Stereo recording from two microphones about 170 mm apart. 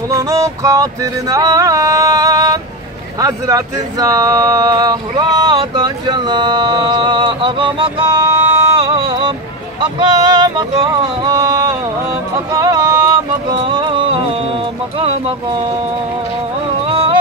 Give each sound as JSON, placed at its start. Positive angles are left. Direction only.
{"t": 0.1, "sound": "a sound", "side_deg": -20}
{"t": 3.2, "sound": "speech", "side_deg": -20}
{"t": 8.7, "sound": "a sound", "side_deg": -30}
{"t": 9.8, "sound": "speech", "side_deg": -25}
{"t": 12.5, "sound": "music", "side_deg": -20}
{"t": 15.0, "sound": "speech", "side_deg": -30}
{"t": 16.9, "sound": "music", "side_deg": -30}